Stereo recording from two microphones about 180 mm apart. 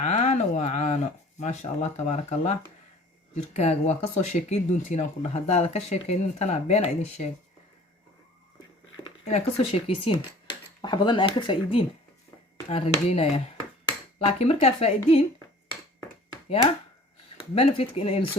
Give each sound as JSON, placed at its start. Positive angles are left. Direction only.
{"t": 0.0, "sound": "speech", "side_deg": 40}
{"t": 9.0, "sound": "speech", "side_deg": 30}
{"t": 17.3, "sound": "speech", "side_deg": 30}